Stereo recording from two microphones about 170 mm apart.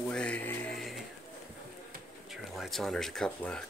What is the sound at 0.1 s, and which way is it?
Music, 5° left (ahead or behind).